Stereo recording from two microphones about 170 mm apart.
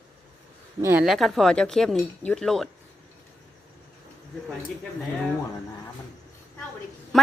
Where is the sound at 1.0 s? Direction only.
Centre (ahead or behind).